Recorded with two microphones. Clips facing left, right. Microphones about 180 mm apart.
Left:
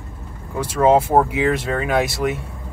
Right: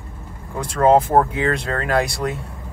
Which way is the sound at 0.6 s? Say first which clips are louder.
Even; 5° left (ahead or behind).